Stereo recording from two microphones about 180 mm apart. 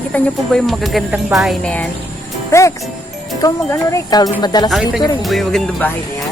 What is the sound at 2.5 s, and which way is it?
Speech, 15° left (ahead or behind).